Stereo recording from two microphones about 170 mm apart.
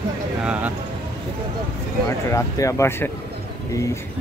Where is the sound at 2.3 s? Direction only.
20° left (ahead or behind).